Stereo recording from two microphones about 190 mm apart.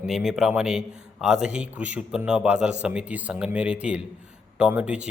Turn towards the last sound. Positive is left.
turn(degrees=-5)  # may be behind; listen again after turning